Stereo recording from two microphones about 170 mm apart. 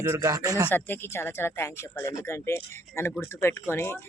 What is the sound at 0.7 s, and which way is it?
Speech, 10° left (ahead or behind).